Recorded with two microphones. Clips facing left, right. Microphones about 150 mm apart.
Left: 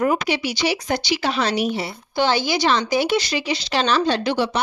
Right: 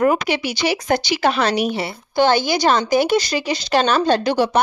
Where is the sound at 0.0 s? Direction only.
55° right (ahead or behind).